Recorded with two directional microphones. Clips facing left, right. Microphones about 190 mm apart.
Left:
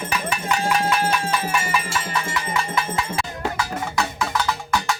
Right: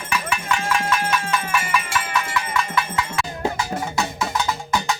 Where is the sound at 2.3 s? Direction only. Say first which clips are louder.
Right 1 dB; 25° left (ahead or behind).